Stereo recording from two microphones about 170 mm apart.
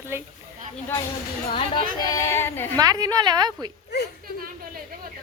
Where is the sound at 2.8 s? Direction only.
20° right (ahead or behind).